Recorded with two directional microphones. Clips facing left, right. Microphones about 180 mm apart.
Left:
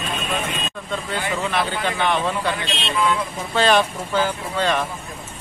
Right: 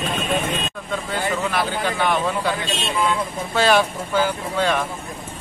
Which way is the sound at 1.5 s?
5° right (ahead or behind).